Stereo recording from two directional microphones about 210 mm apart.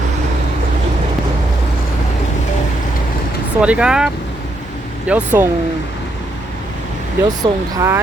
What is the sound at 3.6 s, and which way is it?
Speech, 5° right (ahead or behind).